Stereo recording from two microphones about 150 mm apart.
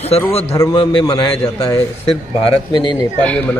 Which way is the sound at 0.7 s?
30° left (ahead or behind).